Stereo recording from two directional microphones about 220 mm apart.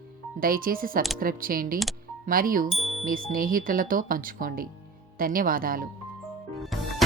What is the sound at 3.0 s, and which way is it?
Speech, 40° right (ahead or behind).